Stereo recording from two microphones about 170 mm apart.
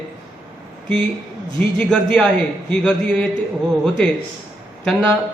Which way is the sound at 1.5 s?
5° left (ahead or behind).